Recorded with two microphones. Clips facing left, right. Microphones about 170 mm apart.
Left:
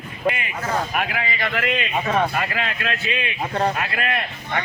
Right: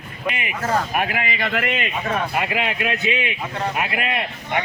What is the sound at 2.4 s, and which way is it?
A man's voice, 15° right (ahead or behind).